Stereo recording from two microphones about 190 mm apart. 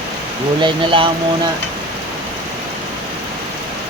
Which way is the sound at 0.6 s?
25° right (ahead or behind).